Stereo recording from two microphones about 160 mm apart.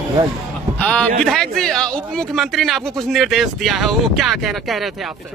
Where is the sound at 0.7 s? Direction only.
5° left (ahead or behind).